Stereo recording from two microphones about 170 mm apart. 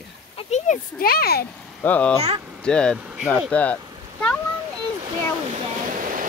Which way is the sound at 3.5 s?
10° left (ahead or behind).